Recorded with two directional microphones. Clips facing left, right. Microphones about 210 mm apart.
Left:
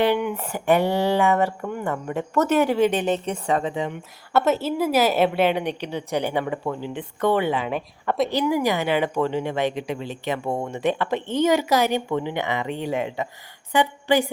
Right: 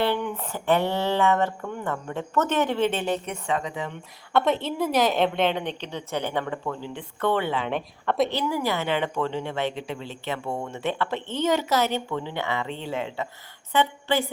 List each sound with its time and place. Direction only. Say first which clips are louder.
0.0 s a woman's voice: left 4 dB; 10° left (ahead or behind)
3.2 s a woman's voice: left 5 dB; 35° left (ahead or behind)
4.3 s a woman's voice: left 2 dB; 5° left (ahead or behind)
8.3 s a woman's voice: left 5 dB; 15° left (ahead or behind)